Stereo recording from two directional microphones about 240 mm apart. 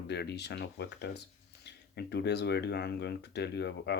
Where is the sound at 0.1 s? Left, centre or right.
Left.